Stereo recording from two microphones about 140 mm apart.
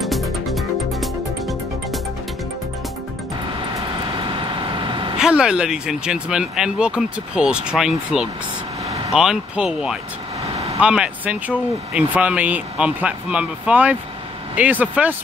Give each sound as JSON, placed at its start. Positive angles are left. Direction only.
{"t": 0.0, "sound": "music", "side_deg": 0}
{"t": 4.2, "sound": "vehicle", "side_deg": -35}
{"t": 5.1, "sound": "speech", "side_deg": -5}
{"t": 10.4, "sound": "vehicle", "side_deg": -45}
{"t": 10.8, "sound": "speech", "side_deg": -10}